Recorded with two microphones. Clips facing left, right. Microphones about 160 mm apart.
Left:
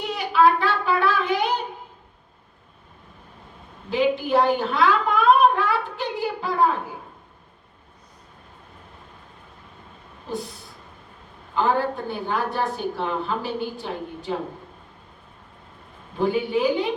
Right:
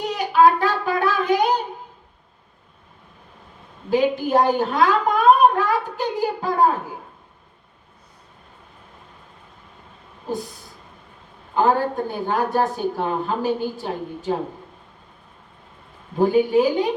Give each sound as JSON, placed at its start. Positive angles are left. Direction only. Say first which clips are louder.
{"t": 0.0, "sound": "child singing", "louder": "right 3 dB", "side_deg": -40}
{"t": 3.8, "sound": "a sound", "louder": "right 2 dB", "side_deg": -45}
{"t": 11.5, "sound": "a woman's voice", "louder": "right 3 dB", "side_deg": -40}
{"t": 16.1, "sound": "a woman's voice", "louder": "right 6 dB", "side_deg": -45}